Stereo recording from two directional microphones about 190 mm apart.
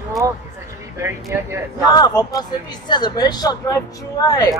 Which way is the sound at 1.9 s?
20° left (ahead or behind).